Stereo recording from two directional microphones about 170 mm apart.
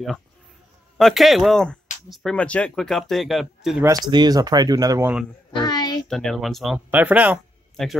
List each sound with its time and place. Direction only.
0.9 s speech: centre (ahead or behind)
4.1 s speech: 25° right (ahead or behind)
5.6 s a woman's voice: 25° left (ahead or behind)
6.0 s speech: 5° left (ahead or behind)